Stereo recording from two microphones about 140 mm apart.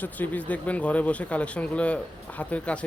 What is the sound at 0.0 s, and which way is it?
A man's voice, 10° left (ahead or behind).